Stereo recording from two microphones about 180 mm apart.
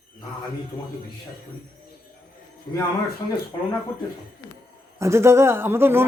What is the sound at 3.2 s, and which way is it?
Speech, 25° left (ahead or behind).